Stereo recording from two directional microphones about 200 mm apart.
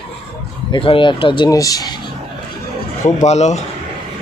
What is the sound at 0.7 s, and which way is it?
Speech, 25° left (ahead or behind).